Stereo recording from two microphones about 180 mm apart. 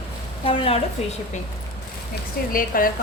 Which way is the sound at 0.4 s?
30° left (ahead or behind).